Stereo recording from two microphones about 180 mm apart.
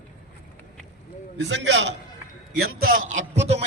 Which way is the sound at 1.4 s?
80° right.